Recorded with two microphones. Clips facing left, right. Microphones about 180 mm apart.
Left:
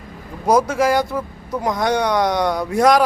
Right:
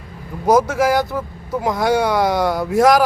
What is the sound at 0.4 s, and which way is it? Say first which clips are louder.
Speech: right 1 dB; centre (ahead or behind).